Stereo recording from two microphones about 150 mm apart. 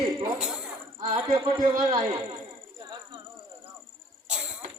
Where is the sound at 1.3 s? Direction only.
25° right (ahead or behind).